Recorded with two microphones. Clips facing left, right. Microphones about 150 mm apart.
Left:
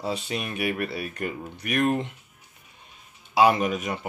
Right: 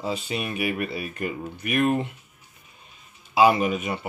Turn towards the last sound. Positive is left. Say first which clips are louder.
# right 1 dB
turn(degrees=-5)  # may be behind; listen again after turning